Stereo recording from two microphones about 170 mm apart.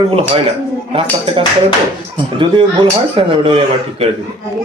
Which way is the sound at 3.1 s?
35° right (ahead or behind).